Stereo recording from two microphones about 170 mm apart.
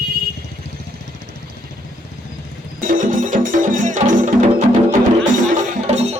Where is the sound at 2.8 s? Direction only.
50° right (ahead or behind).